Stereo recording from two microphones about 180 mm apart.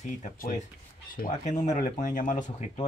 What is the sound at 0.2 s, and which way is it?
Speech, 50° left (ahead or behind).